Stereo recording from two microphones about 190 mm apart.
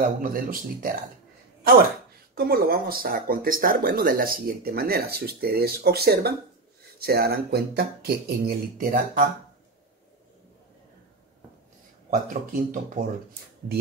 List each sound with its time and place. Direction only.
0.2 s speech: 50° right (ahead or behind)
2.3 s speech: 55° right (ahead or behind)
12.1 s speech: 50° right (ahead or behind)